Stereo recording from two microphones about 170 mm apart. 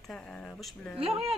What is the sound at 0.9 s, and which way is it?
Speech, 35° right (ahead or behind).